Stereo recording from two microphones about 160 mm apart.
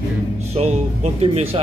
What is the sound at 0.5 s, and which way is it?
Speech, 40° right (ahead or behind).